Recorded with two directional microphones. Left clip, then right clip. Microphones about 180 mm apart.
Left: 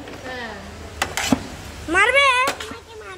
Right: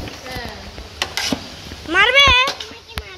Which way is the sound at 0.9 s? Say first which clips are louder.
Even; centre (ahead or behind).